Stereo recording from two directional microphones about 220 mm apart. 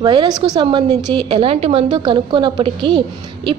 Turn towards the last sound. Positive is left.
turn(degrees=-20)  # may be behind; listen again after turning